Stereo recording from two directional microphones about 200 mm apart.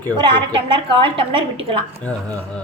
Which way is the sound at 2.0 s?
5° left (ahead or behind).